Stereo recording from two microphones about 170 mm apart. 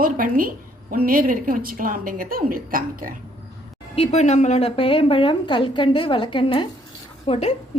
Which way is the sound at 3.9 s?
40° left (ahead or behind).